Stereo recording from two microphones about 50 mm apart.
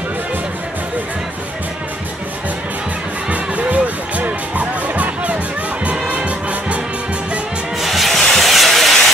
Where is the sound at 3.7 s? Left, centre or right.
Right.